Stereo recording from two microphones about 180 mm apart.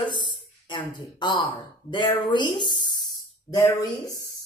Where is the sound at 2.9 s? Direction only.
25° left (ahead or behind).